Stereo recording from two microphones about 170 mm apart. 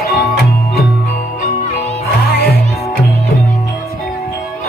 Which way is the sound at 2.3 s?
65° left (ahead or behind).